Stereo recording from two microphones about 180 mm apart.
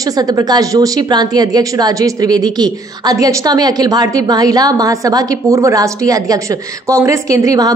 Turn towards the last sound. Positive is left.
turn(degrees=-20)  # may be behind; listen again after turning